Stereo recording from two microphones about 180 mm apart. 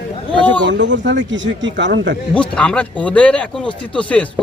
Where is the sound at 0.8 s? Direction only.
85° right.